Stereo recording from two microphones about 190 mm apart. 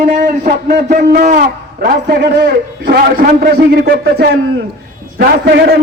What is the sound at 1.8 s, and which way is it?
A man's voice, 60° right (ahead or behind).